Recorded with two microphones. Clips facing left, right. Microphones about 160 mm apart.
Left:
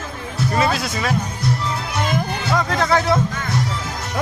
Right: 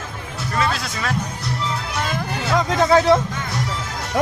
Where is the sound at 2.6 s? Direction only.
20° right (ahead or behind).